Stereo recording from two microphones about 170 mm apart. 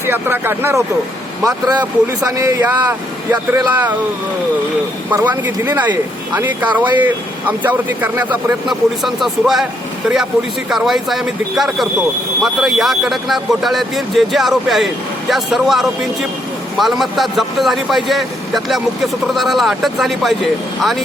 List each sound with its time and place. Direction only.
0.0 s speech: 15° right (ahead or behind)
3.7 s speech: 10° right (ahead or behind)
5.1 s speech: 10° right (ahead or behind)
10.7 s a man's voice: centre (ahead or behind)